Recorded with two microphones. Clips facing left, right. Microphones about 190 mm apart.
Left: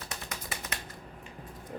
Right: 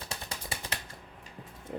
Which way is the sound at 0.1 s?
30° right (ahead or behind).